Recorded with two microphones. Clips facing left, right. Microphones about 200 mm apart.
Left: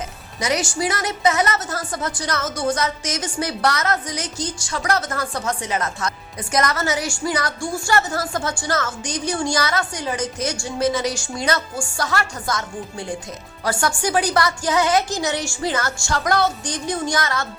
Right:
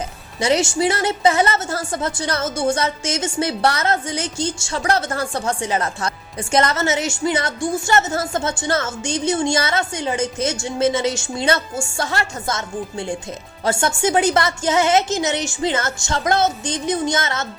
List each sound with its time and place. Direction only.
0.3 s a woman's voice: 30° right (ahead or behind)